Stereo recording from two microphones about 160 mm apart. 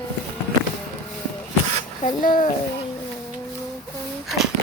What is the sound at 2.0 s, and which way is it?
Speech, 55° left (ahead or behind).